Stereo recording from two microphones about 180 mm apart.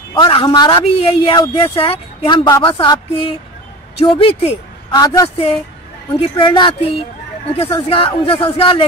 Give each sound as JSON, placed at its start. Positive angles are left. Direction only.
{"t": 0.1, "sound": "a man's voice", "side_deg": 30}